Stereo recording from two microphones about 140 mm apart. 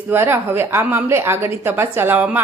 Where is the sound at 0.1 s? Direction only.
15° right (ahead or behind).